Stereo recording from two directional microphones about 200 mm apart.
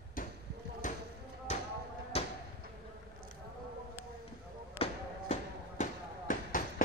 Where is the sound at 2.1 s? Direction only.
30° left (ahead or behind).